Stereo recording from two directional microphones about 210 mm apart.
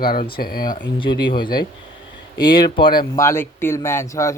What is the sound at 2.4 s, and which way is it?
A man's voice, 20° left (ahead or behind).